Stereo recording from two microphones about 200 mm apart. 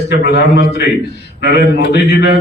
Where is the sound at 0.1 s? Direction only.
60° left (ahead or behind).